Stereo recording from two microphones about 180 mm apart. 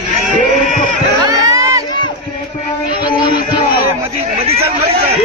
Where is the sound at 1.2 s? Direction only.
20° right (ahead or behind).